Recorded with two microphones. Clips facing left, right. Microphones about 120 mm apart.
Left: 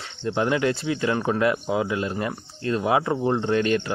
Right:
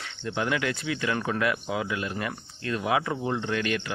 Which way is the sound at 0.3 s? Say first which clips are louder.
Left 6 dB; 30° left (ahead or behind).